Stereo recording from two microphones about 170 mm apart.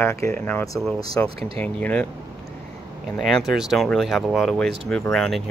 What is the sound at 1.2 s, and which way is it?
Speech, 35° right (ahead or behind).